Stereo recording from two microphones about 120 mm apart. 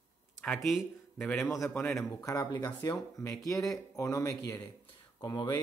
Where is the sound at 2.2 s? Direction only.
30° left (ahead or behind).